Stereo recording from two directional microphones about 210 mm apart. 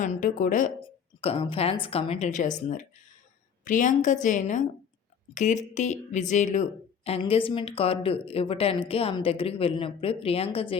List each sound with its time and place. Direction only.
0.0 s a woman's voice: 35° left (ahead or behind)
1.2 s a woman's voice: 25° left (ahead or behind)